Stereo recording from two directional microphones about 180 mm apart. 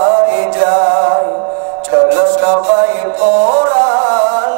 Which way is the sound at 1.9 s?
15° right (ahead or behind).